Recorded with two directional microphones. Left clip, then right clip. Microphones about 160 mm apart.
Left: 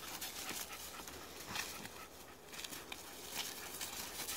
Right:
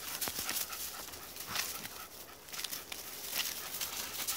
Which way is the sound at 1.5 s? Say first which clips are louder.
Right 5 dB; 20° right (ahead or behind).